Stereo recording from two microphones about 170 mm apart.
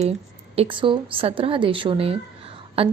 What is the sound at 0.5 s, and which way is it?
A woman's voice, 35° right (ahead or behind).